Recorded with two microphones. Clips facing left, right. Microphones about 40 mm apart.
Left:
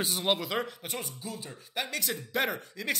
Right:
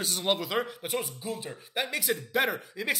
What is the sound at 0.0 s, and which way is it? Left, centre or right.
Speech, centre.